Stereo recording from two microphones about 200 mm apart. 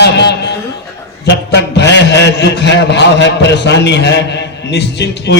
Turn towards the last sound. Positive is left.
turn(degrees=60)  # may be behind; listen again after turning